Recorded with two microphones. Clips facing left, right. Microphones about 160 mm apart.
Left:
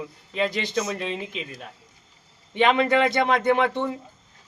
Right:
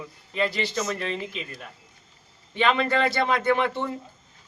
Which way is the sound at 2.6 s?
20° left (ahead or behind).